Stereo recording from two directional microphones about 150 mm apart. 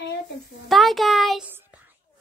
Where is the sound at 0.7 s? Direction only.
Centre (ahead or behind).